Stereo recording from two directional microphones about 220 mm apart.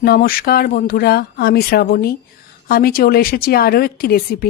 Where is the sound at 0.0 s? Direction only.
40° left (ahead or behind).